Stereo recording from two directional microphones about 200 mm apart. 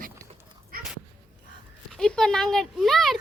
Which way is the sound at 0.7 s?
45° right (ahead or behind).